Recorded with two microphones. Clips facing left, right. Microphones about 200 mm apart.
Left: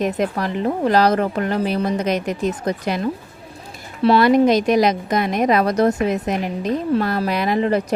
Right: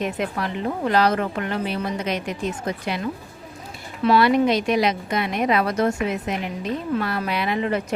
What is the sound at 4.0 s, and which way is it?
Speech, 40° left (ahead or behind).